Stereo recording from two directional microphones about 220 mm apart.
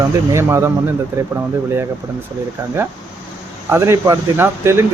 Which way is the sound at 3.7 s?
10° right (ahead or behind).